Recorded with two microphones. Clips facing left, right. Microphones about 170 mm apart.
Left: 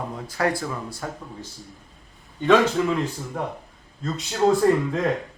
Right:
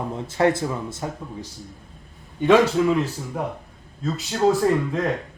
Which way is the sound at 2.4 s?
5° right (ahead or behind).